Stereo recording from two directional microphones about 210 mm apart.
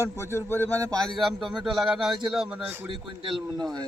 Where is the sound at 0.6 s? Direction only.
15° right (ahead or behind).